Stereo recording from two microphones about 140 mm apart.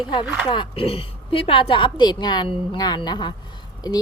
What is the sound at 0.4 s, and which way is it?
A woman's voice, 35° left (ahead or behind).